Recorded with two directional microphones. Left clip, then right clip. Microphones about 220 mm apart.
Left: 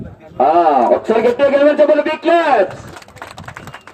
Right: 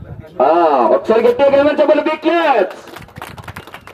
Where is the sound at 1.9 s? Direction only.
55° right (ahead or behind).